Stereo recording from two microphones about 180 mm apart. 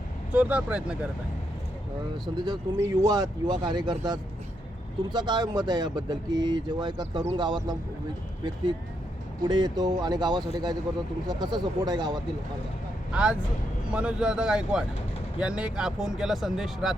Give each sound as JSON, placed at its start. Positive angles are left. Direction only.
{"t": 0.3, "sound": "speech", "side_deg": -10}
{"t": 2.2, "sound": "speech", "side_deg": -25}
{"t": 9.4, "sound": "speech", "side_deg": -25}
{"t": 13.9, "sound": "speech", "side_deg": -5}